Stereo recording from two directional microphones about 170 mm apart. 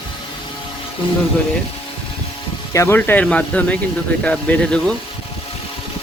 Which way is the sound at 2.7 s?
15° left (ahead or behind).